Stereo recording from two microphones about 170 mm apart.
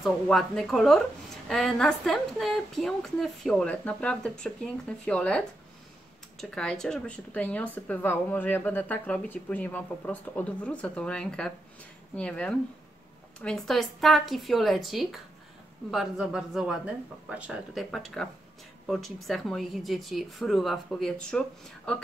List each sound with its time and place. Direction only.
0.0 s a woman's voice: centre (ahead or behind)
6.5 s a woman's voice: 5° left (ahead or behind)